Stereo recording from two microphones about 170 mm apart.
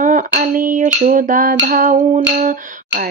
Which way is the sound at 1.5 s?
60° right (ahead or behind).